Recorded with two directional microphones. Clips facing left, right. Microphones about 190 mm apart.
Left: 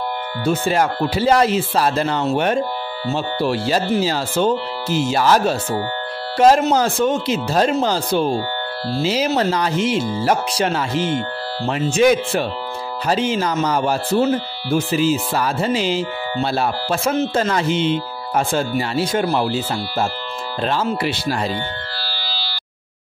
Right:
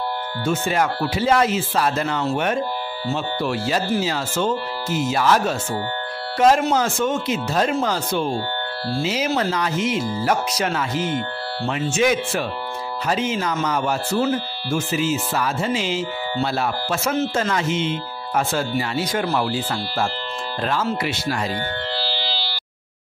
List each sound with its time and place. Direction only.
0.5 s speech: 35° left (ahead or behind)
21.9 s siren: 20° right (ahead or behind)